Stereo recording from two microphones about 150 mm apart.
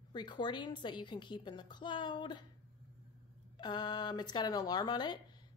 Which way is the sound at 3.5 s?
30° left (ahead or behind).